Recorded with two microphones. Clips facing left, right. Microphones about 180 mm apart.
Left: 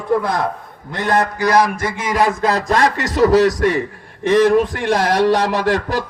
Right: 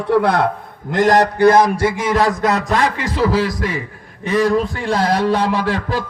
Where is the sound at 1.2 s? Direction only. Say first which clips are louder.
Right 6 dB; 60° right (ahead or behind).